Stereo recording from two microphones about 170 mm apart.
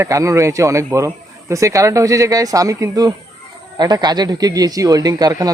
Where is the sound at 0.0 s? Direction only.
20° right (ahead or behind).